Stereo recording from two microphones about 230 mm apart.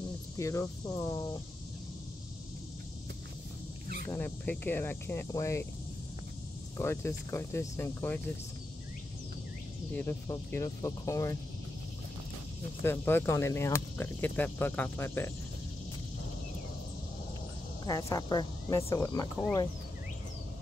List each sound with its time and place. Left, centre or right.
0.4 s speech: centre
4.1 s speech: centre
6.8 s speech: centre
9.9 s speech: centre
12.8 s speech: centre
17.8 s speech: centre